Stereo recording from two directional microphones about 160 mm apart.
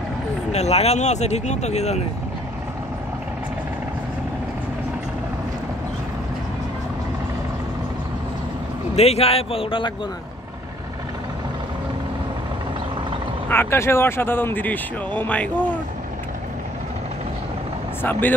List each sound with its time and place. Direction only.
0.5 s speech: 40° left (ahead or behind)
8.9 s a man's voice: 40° left (ahead or behind)
13.5 s speech: 15° left (ahead or behind)